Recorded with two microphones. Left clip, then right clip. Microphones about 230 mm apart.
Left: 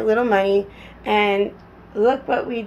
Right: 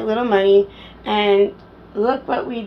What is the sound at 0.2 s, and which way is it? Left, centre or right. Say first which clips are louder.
Speech: right 3 dB; left.